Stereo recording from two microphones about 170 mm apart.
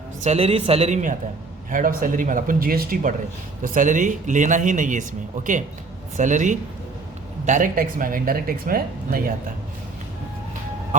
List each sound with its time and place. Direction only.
0.2 s a man's voice: 40° right (ahead or behind)
1.7 s speech: 55° right (ahead or behind)
6.1 s speech: 45° right (ahead or behind)